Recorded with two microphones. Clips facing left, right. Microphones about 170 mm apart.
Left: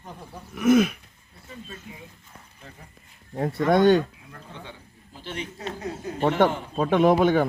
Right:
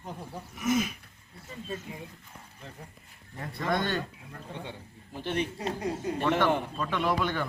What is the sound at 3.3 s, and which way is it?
Speech, 55° left (ahead or behind).